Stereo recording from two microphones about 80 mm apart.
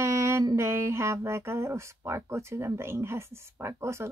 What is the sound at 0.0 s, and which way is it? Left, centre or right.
Mantra, right.